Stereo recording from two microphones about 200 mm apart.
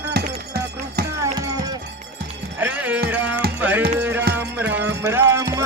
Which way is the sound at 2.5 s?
10° right (ahead or behind).